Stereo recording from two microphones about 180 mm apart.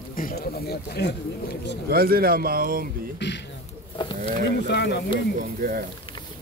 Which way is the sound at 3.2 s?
75° left (ahead or behind).